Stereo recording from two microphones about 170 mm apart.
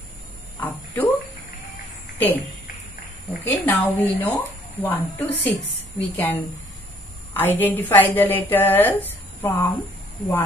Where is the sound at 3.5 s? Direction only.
10° left (ahead or behind).